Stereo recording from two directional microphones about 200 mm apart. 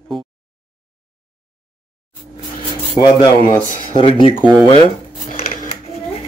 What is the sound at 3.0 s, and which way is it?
Speech, 25° left (ahead or behind).